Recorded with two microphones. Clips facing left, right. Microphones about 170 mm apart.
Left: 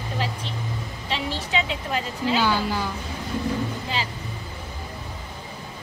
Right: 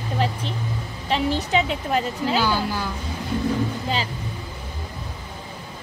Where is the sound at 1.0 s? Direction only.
45° right (ahead or behind).